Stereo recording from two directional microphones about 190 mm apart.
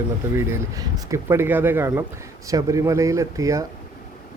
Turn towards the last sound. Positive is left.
turn(degrees=-15)  # may be behind; listen again after turning